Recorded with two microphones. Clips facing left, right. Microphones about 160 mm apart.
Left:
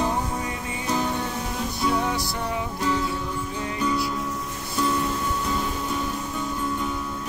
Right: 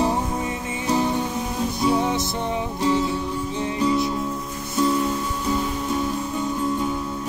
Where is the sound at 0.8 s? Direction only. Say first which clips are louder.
Right 4 dB; 20° right (ahead or behind).